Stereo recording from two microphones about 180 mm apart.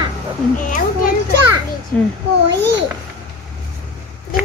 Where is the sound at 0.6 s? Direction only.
45° left (ahead or behind).